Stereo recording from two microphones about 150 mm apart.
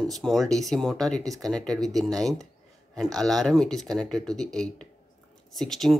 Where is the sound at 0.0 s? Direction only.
Centre (ahead or behind).